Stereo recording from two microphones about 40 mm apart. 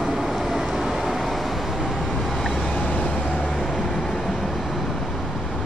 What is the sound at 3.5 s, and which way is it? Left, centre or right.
Vehicle, centre.